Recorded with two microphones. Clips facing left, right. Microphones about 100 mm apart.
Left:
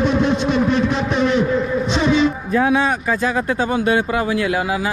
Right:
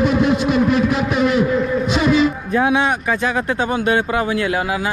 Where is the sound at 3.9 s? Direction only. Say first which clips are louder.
Right 2 dB; 30° right (ahead or behind).